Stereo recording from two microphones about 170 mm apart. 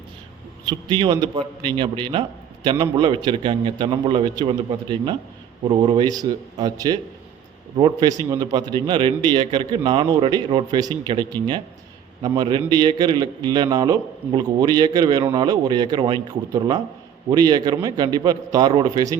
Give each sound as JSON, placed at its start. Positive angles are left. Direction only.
{"t": 0.6, "sound": "a man's voice", "side_deg": -25}